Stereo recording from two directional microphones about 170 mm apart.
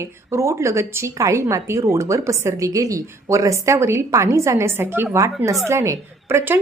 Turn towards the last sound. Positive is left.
turn(degrees=-15)  # may be behind; listen again after turning